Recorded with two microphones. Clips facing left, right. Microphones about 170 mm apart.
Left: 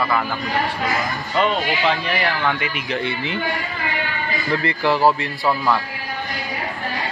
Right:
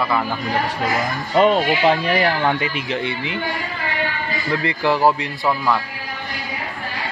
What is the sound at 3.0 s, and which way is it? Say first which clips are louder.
Speech: even; 15° right (ahead or behind).